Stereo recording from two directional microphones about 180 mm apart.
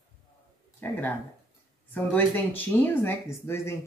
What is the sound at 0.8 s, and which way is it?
Speech, 10° left (ahead or behind).